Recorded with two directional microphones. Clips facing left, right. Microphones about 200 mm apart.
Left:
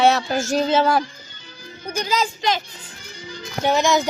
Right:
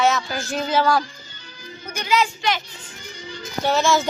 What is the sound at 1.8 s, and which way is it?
Speech, 35° left (ahead or behind).